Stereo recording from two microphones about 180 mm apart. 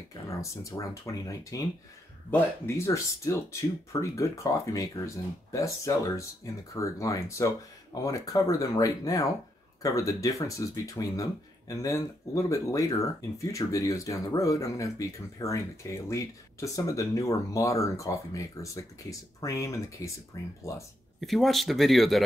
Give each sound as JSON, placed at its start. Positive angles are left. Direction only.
{"t": 0.3, "sound": "speech", "side_deg": 15}
{"t": 2.6, "sound": "speech", "side_deg": 15}
{"t": 21.2, "sound": "speech", "side_deg": 0}